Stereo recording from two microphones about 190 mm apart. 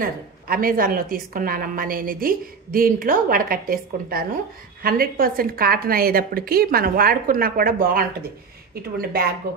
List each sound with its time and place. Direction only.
0.0 s a woman's voice: 50° right (ahead or behind)